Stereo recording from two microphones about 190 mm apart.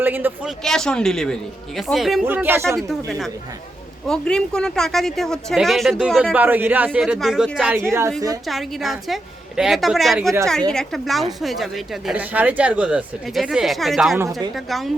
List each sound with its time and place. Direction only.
0.0 s speech: 10° right (ahead or behind)
0.6 s speech: 5° left (ahead or behind)
2.7 s speech: centre (ahead or behind)
7.7 s speech: 15° right (ahead or behind)
8.4 s speech: centre (ahead or behind)
14.2 s speech: 20° right (ahead or behind)
14.5 s speech: centre (ahead or behind)